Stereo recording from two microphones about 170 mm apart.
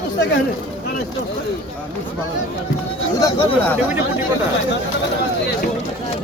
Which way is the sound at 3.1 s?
20° left (ahead or behind).